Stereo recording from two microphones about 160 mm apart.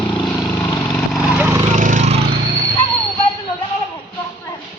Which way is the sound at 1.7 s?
50° right (ahead or behind).